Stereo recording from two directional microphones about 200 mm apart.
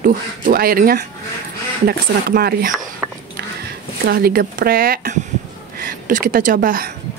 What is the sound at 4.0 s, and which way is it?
Speech, 50° right (ahead or behind).